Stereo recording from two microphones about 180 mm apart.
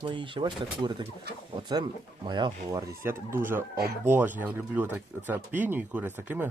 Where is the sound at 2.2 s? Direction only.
25° right (ahead or behind).